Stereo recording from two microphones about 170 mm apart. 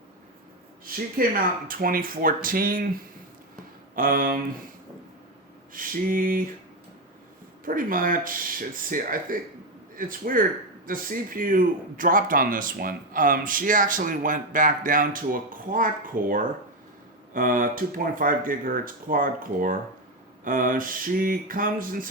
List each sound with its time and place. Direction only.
1.2 s speech: 55° right (ahead or behind)
3.9 s speech: 55° right (ahead or behind)
5.7 s speech: 55° right (ahead or behind)
7.6 s speech: 55° right (ahead or behind)